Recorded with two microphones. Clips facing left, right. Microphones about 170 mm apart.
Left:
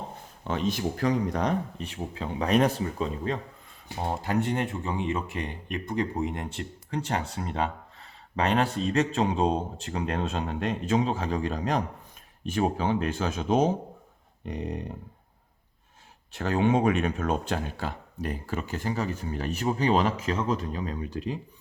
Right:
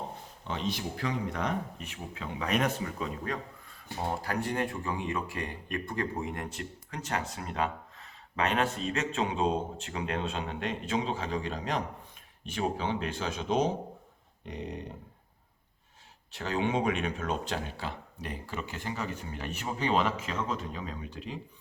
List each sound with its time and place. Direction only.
0.4 s speech: 50° left (ahead or behind)
16.3 s speech: 50° left (ahead or behind)